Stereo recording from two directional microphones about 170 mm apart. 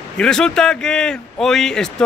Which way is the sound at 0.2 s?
5° left (ahead or behind).